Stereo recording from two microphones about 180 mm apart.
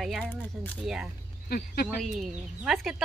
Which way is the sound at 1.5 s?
55° left (ahead or behind).